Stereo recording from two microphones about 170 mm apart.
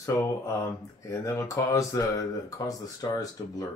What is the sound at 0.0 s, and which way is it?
Speech, 15° left (ahead or behind).